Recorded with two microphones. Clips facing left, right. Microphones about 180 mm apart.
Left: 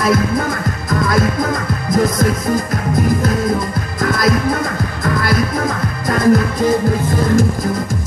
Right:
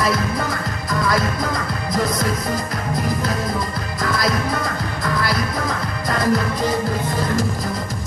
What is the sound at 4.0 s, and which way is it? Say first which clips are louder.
Music: left 5 dB; 50° left (ahead or behind).